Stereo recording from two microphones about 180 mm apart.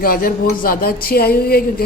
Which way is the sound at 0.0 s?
50° left (ahead or behind).